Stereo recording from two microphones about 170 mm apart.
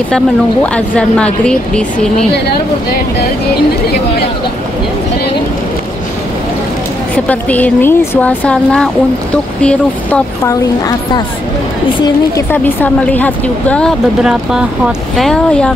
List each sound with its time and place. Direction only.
0.7 s speech: 5° left (ahead or behind)
7.2 s a woman's voice: 10° left (ahead or behind)
12.0 s a woman's voice: 15° left (ahead or behind)